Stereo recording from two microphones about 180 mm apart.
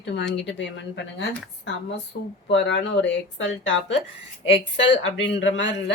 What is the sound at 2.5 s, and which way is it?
Speech, 80° left.